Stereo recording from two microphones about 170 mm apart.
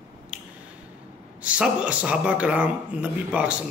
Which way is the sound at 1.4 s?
5° right (ahead or behind).